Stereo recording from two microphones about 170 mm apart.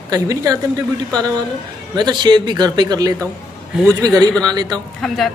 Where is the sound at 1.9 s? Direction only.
25° right (ahead or behind).